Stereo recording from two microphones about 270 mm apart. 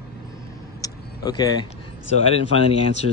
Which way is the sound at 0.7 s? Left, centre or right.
Centre.